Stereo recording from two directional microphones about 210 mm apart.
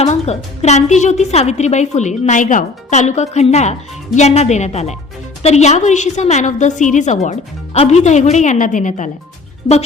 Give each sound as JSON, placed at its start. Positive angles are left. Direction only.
{"t": 0.0, "sound": "a woman's voice", "side_deg": 30}